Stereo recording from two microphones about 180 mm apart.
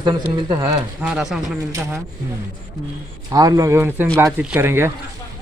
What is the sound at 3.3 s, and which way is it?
Speech, 20° right (ahead or behind).